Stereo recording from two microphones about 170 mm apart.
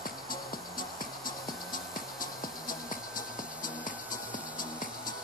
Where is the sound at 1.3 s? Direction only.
55° left (ahead or behind).